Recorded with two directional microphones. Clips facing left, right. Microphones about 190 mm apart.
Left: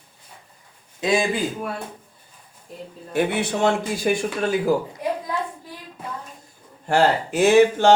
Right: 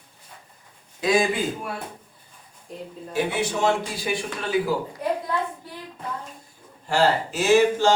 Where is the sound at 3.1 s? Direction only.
60° left (ahead or behind).